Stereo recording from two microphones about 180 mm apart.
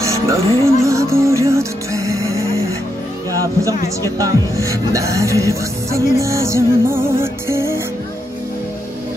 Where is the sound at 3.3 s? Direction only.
20° right (ahead or behind).